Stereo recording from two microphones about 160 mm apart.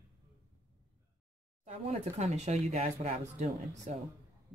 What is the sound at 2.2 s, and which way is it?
Speech, 45° right (ahead or behind).